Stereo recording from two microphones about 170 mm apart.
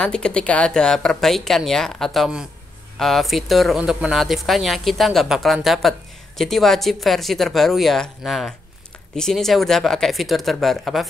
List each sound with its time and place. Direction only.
0.0 s speech: 5° left (ahead or behind)